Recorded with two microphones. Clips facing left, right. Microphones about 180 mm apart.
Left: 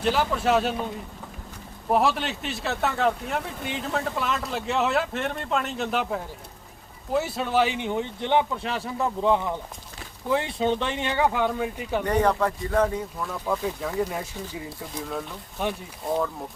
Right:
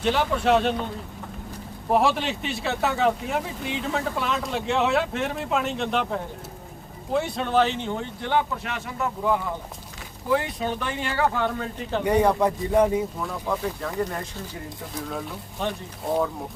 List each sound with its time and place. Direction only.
0.0 s speech: centre (ahead or behind)
1.9 s speech: centre (ahead or behind); by 8.7 s 20° left (ahead or behind)
8.7 s speech: 30° left (ahead or behind); by 12.0 s 10° left (ahead or behind)
12.0 s speech: 10° right (ahead or behind)
13.2 s speech: 5° left (ahead or behind)
15.6 s speech: 10° left (ahead or behind)